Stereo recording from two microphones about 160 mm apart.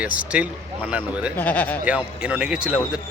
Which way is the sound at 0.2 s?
10° right (ahead or behind).